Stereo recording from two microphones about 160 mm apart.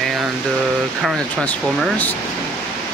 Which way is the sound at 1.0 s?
Centre (ahead or behind).